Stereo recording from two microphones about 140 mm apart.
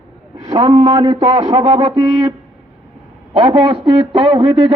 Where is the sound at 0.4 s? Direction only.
30° right (ahead or behind).